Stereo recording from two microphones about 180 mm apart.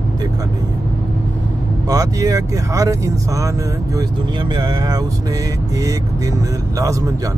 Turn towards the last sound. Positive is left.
turn(degrees=-20)  # may be behind; listen again after turning